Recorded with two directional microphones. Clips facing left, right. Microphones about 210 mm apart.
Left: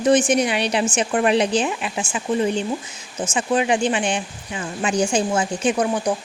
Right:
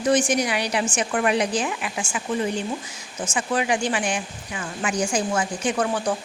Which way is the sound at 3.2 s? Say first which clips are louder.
Left 4 dB; 20° left (ahead or behind).